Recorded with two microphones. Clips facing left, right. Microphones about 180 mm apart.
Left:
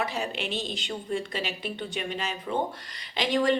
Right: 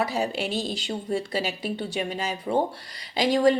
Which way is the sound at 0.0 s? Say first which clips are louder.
Right 4 dB; 35° right (ahead or behind).